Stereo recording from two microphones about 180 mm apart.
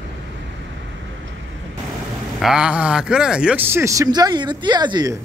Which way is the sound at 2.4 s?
5° right (ahead or behind).